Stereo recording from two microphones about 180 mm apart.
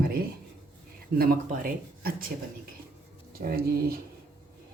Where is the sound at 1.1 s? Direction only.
55° right (ahead or behind).